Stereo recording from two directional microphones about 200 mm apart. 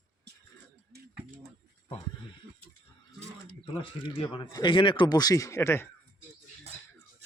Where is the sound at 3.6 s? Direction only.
25° left (ahead or behind).